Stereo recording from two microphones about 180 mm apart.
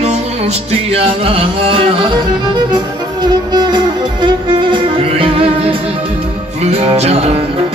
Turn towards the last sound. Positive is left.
turn(degrees=-35)  # may be behind; listen again after turning